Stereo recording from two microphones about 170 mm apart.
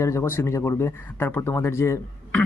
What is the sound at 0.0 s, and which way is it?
Speech, 15° left (ahead or behind).